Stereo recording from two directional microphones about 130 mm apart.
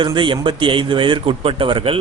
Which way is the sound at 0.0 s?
40° right (ahead or behind).